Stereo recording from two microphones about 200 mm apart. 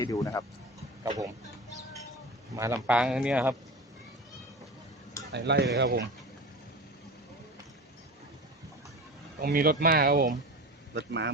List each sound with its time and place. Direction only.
0.0 s speech: 15° left (ahead or behind)
1.0 s speech: 20° right (ahead or behind)
2.6 s speech: 15° right (ahead or behind)
5.3 s speech: 60° right (ahead or behind)
9.4 s speech: 50° right (ahead or behind)
10.9 s speech: 60° right (ahead or behind)